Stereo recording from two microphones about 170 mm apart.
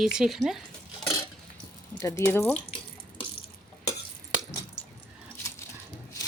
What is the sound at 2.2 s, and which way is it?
Speech, 15° left (ahead or behind).